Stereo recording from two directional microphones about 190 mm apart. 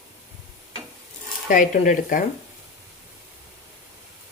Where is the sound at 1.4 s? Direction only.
45° left (ahead or behind).